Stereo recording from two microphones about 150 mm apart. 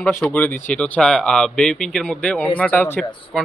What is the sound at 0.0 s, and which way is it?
A man's voice, 10° left (ahead or behind).